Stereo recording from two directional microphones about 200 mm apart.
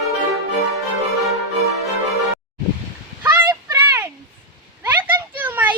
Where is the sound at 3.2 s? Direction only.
10° right (ahead or behind).